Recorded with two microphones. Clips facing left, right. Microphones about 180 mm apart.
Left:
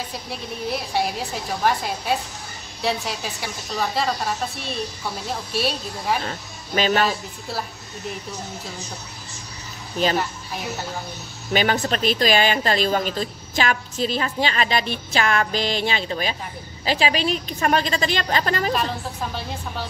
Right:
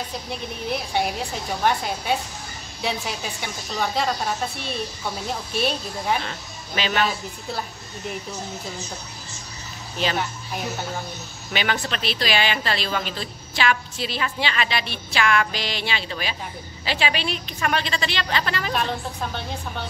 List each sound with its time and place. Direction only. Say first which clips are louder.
0.3 s a woman's voice: left 1 dB; centre (ahead or behind)
6.2 s speech: left 3 dB; 40° left (ahead or behind)
11.5 s a woman's voice: left 5 dB; 40° left (ahead or behind)
18.7 s a woman's voice: left 1 dB; 5° left (ahead or behind)